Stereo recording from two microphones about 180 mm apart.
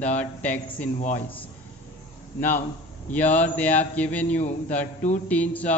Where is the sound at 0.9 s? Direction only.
40° left (ahead or behind).